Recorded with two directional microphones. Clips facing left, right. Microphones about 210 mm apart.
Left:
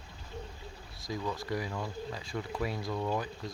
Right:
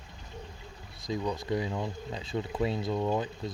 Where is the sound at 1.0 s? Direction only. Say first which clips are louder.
Right 4 dB; 20° right (ahead or behind).